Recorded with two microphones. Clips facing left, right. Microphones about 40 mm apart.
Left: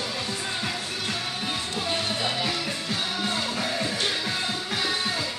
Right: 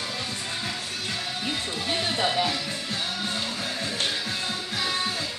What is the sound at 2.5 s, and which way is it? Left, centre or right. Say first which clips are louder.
Music: left 2 dB; left.